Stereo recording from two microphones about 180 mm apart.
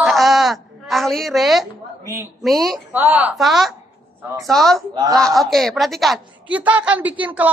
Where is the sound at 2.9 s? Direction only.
10° right (ahead or behind).